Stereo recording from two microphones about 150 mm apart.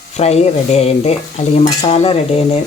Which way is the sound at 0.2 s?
45° left (ahead or behind).